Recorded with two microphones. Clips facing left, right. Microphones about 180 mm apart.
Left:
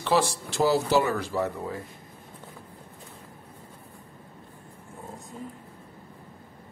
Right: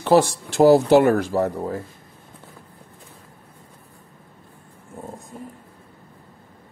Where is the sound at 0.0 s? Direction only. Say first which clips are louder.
Right 8 dB; 50° right (ahead or behind).